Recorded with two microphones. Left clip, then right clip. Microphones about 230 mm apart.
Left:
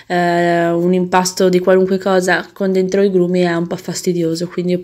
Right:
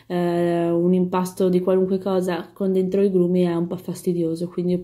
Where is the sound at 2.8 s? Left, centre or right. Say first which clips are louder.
Left 6 dB; centre.